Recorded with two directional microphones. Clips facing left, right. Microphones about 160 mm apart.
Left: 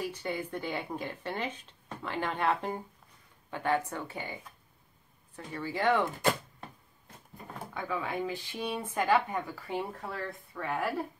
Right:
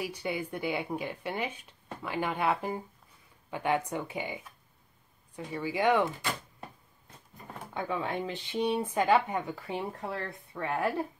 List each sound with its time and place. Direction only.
0.0 s speech: 10° right (ahead or behind)
7.7 s speech: 25° right (ahead or behind)